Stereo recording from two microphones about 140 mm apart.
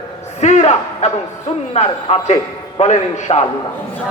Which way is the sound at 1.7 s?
50° left (ahead or behind).